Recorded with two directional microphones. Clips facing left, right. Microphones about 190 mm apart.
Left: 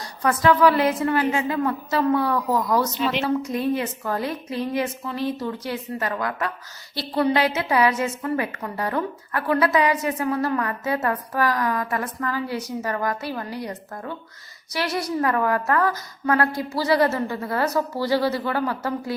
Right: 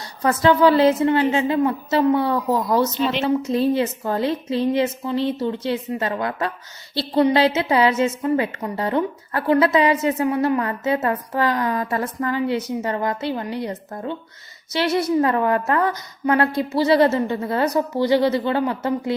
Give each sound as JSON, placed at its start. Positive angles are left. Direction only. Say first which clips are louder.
{"t": 0.0, "sound": "a woman's voice", "louder": "right 2 dB", "side_deg": -25}